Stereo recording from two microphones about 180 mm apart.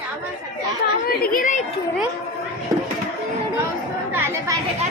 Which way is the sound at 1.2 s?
50° left (ahead or behind).